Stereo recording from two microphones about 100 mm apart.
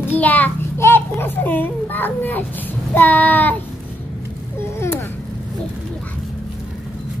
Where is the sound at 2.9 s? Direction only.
15° left (ahead or behind).